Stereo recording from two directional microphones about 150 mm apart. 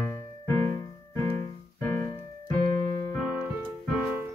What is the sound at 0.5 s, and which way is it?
Music, 20° left (ahead or behind).